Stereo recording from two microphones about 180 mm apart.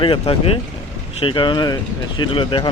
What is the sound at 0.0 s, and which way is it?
Speech, 30° left (ahead or behind).